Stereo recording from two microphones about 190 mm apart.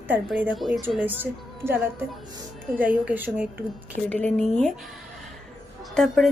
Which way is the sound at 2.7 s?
5° right (ahead or behind).